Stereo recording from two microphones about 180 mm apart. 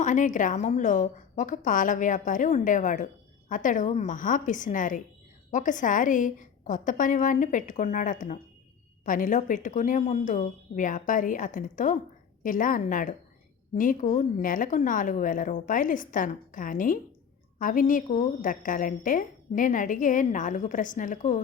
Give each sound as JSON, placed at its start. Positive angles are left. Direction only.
{"t": 0.0, "sound": "a woman's voice", "side_deg": 45}